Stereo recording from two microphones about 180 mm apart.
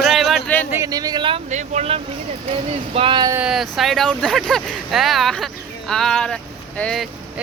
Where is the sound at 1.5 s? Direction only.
40° right (ahead or behind).